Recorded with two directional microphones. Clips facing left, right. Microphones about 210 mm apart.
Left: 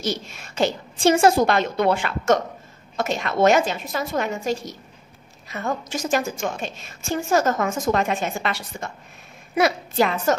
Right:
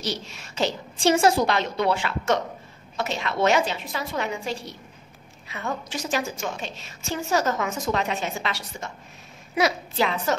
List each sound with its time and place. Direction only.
0.0 s a woman's voice: 50° left (ahead or behind)